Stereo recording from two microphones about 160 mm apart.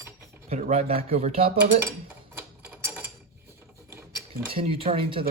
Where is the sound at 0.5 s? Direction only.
40° right (ahead or behind).